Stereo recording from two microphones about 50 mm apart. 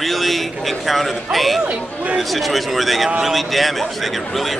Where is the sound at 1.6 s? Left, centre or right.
Right.